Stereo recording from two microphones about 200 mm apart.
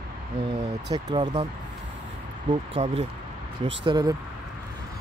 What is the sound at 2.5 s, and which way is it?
Speech, 30° right (ahead or behind).